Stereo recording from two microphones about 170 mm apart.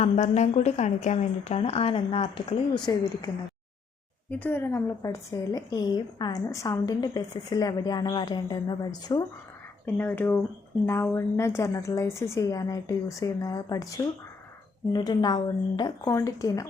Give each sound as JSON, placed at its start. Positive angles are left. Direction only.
{"t": 0.0, "sound": "a woman's voice", "side_deg": 40}
{"t": 2.9, "sound": "a woman's voice", "side_deg": 20}
{"t": 4.3, "sound": "a woman's voice", "side_deg": 10}
{"t": 9.8, "sound": "a woman's voice", "side_deg": 10}